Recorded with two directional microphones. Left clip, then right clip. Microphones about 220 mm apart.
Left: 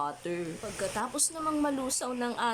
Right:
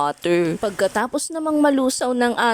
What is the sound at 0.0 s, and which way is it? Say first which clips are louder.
Speech: right 14 dB; 45° right (ahead or behind).